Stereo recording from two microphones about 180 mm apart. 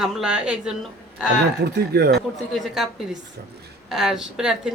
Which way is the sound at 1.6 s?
60° right (ahead or behind).